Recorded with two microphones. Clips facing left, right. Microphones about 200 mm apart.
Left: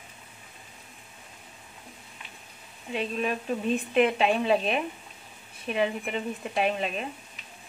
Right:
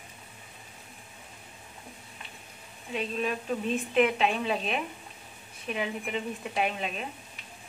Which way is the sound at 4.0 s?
Centre (ahead or behind).